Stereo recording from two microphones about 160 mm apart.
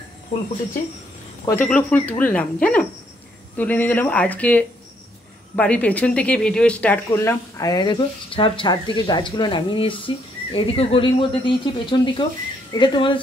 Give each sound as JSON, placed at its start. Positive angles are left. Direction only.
{"t": 1.4, "sound": "speech", "side_deg": 15}